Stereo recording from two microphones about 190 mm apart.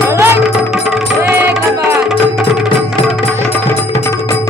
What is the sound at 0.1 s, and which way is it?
Music, 10° right (ahead or behind).